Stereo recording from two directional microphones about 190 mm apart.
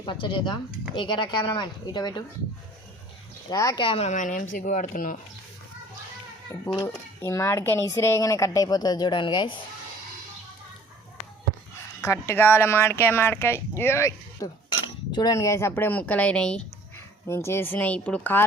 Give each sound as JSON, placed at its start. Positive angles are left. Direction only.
{"t": 0.0, "sound": "speech", "side_deg": 25}
{"t": 3.5, "sound": "speech", "side_deg": 20}
{"t": 6.7, "sound": "speech", "side_deg": 15}
{"t": 12.0, "sound": "speech", "side_deg": 15}